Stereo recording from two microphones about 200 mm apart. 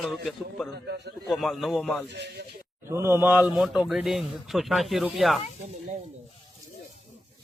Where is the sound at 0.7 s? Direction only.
55° right (ahead or behind).